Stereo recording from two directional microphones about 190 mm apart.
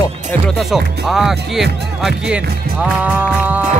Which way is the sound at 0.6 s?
Centre (ahead or behind).